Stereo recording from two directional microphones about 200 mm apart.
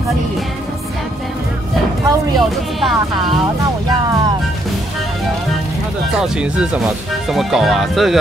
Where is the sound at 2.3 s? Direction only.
Centre (ahead or behind).